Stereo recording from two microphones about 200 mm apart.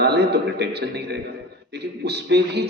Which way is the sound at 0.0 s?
55° right (ahead or behind).